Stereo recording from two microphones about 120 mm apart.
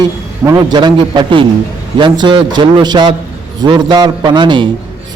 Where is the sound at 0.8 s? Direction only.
40° right (ahead or behind).